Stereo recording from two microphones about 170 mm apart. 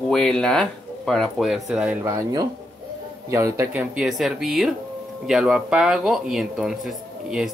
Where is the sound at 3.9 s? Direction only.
Centre (ahead or behind).